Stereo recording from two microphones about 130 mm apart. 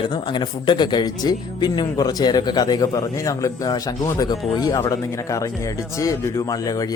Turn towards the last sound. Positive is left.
turn(degrees=30)  # may be behind; listen again after turning